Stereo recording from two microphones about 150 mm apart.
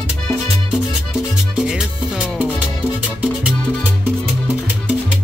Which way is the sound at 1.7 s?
5° right (ahead or behind).